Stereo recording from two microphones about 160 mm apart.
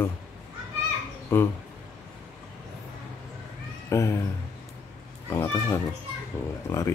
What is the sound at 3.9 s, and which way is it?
Speech, 15° left (ahead or behind).